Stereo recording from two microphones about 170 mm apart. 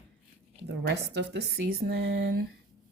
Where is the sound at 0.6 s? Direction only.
75° right (ahead or behind).